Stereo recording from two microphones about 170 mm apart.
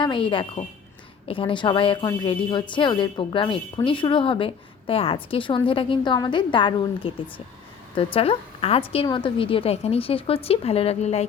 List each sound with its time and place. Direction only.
0.0 s a woman's voice: 30° left (ahead or behind)